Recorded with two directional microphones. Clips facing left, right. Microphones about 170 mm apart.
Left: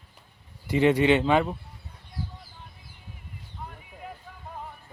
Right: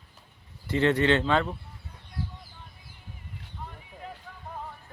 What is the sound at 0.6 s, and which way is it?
Speech, 15° left (ahead or behind).